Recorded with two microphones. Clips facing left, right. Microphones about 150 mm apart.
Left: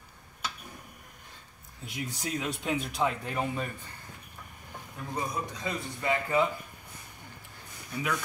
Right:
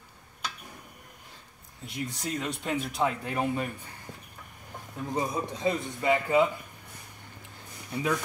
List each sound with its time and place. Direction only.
1.9 s speech: centre (ahead or behind)
5.1 s a man's voice: 25° right (ahead or behind)
7.9 s speech: 30° right (ahead or behind)